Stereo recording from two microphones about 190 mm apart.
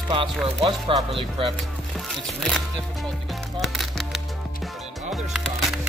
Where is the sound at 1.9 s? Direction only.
Centre (ahead or behind).